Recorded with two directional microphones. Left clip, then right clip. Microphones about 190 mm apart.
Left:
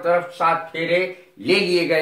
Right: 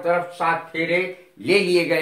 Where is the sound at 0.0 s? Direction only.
15° right (ahead or behind).